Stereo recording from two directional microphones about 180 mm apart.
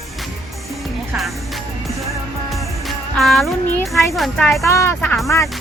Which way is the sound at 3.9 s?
Centre (ahead or behind).